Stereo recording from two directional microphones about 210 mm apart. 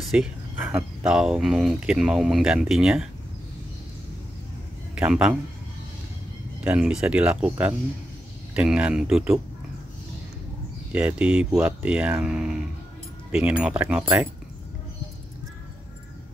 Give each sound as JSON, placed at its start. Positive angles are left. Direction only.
{"t": 0.1, "sound": "speech", "side_deg": -5}
{"t": 4.9, "sound": "speech", "side_deg": -5}
{"t": 6.6, "sound": "speech", "side_deg": -5}
{"t": 10.9, "sound": "speech", "side_deg": -5}